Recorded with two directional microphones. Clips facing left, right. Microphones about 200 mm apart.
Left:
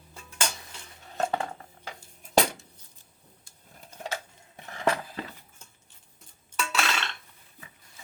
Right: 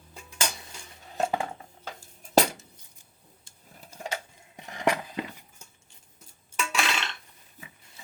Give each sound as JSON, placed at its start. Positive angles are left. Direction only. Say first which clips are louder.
{"t": 0.1, "sound": "dishes", "louder": "even", "side_deg": -15}
{"t": 2.3, "sound": "cutlery", "louder": "right 2 dB", "side_deg": 0}
{"t": 3.8, "sound": "a sound", "louder": "even", "side_deg": -10}
{"t": 6.6, "sound": "dishes", "louder": "even", "side_deg": -15}